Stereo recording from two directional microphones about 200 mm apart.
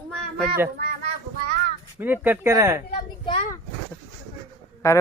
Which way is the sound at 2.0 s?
10° right (ahead or behind).